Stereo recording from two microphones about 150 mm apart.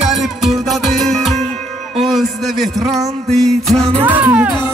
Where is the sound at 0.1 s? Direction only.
Centre (ahead or behind).